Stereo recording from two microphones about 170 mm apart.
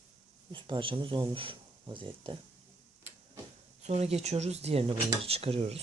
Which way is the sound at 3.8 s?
40° right (ahead or behind).